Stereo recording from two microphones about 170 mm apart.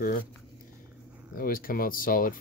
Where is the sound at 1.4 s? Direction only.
55° left (ahead or behind).